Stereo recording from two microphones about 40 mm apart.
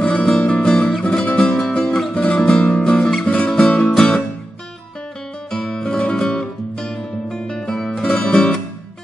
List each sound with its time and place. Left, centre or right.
0.0 s music: left
5.5 s music: centre